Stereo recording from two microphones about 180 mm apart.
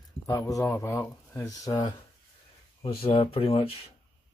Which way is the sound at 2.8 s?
30° left (ahead or behind).